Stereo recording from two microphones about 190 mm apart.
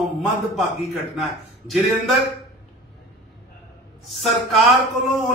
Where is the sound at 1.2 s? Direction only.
Centre (ahead or behind).